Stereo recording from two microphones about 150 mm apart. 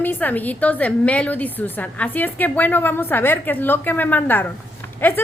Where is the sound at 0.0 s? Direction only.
10° left (ahead or behind).